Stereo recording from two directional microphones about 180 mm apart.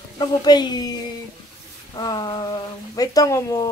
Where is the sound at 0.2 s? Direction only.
25° left (ahead or behind).